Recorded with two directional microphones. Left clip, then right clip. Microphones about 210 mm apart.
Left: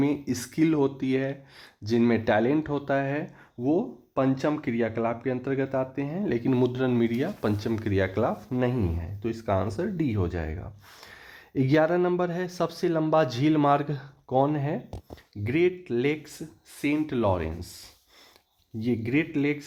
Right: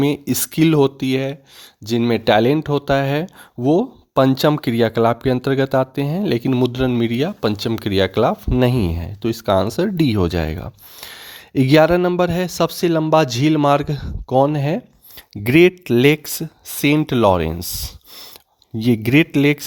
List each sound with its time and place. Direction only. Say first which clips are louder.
0.0 s speech: right 8 dB; 45° right (ahead or behind)
3.2 s speech: right 9 dB; 55° right (ahead or behind)
15.3 s speech: right 12 dB; 55° right (ahead or behind)